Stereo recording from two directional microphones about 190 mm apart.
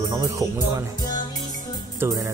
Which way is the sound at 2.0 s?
15° right (ahead or behind).